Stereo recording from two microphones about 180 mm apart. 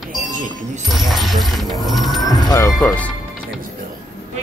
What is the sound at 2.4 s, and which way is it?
Music, 15° left (ahead or behind).